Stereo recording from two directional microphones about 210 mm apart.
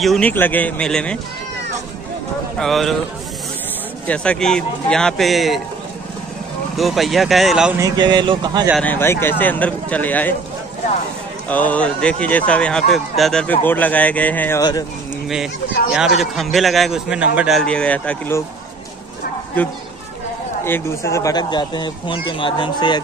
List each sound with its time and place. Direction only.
0.0 s a man's voice: 5° left (ahead or behind)
2.6 s a man's voice: centre (ahead or behind)
4.1 s a man's voice: 5° left (ahead or behind)
6.8 s a man's voice: centre (ahead or behind)
7.8 s speech: 20° right (ahead or behind)
8.8 s speech: 10° left (ahead or behind)
11.4 s a man's voice: 5° left (ahead or behind)
14.6 s speech: 20° left (ahead or behind)
15.2 s a man's voice: centre (ahead or behind)
20.6 s speech: 10° left (ahead or behind)